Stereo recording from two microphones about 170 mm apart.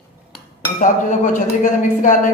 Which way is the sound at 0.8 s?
45° left (ahead or behind).